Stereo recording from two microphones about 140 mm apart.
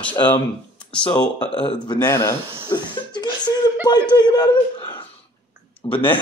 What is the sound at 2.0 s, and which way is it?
Speech, 20° left (ahead or behind).